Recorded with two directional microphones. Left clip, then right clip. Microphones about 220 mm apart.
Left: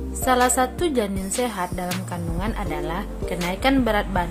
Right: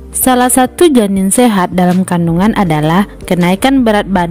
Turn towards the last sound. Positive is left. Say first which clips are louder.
# right 11 dB
turn(degrees=-45)  # may be behind; listen again after turning